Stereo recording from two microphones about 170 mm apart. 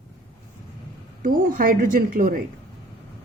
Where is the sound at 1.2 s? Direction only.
55° right (ahead or behind).